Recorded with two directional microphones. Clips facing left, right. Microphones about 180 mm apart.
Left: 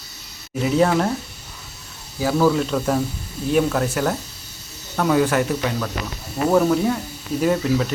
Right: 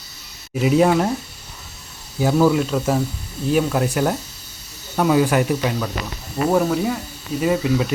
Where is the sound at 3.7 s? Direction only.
15° right (ahead or behind).